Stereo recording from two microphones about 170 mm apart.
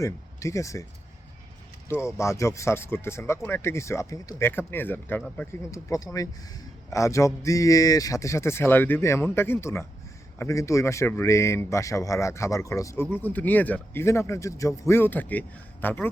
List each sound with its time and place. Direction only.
0.0 s speech: 20° left (ahead or behind)
1.9 s speech: 15° left (ahead or behind)